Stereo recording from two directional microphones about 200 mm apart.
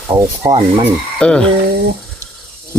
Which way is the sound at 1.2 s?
5° left (ahead or behind).